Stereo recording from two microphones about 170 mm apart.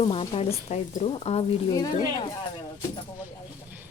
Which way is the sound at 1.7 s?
25° left (ahead or behind).